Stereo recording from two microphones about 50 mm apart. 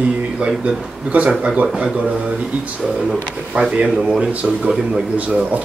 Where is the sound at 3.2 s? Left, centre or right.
Centre.